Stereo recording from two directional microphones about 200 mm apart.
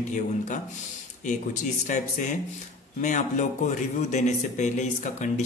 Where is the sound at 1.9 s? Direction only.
40° left (ahead or behind).